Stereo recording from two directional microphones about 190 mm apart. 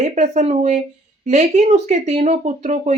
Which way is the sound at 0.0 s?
40° right (ahead or behind).